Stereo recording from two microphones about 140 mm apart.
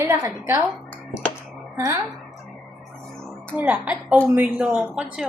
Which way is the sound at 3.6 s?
10° right (ahead or behind).